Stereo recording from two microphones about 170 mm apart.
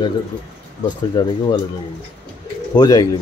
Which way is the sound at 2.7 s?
25° left (ahead or behind).